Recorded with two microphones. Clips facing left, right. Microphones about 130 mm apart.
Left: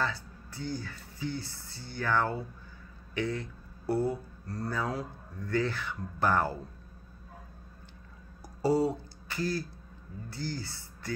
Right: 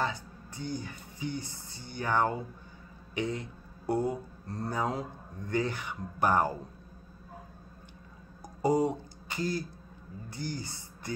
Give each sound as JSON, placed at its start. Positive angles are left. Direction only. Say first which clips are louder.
{"t": 0.0, "sound": "speech", "louder": "right 1 dB", "side_deg": -20}
{"t": 8.6, "sound": "speech", "louder": "even", "side_deg": -20}